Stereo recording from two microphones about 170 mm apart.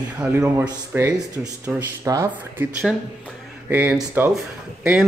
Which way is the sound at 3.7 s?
10° right (ahead or behind).